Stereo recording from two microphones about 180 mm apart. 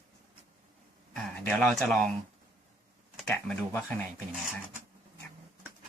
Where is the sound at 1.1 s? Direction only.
5° left (ahead or behind).